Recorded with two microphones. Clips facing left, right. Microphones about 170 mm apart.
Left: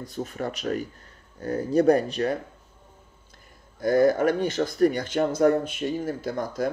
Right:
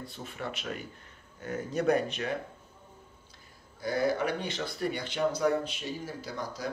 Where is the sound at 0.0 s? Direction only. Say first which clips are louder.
Left 8 dB; 45° left (ahead or behind).